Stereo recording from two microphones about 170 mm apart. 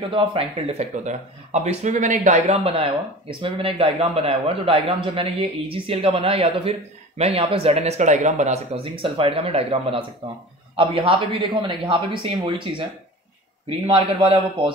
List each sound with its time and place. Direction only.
0.1 s a man's voice: 35° right (ahead or behind)